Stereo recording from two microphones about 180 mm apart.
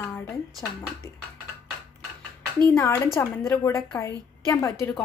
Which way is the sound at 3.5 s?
20° left (ahead or behind).